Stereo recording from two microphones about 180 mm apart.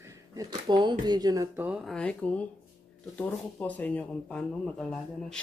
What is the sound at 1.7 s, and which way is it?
Speech, centre (ahead or behind).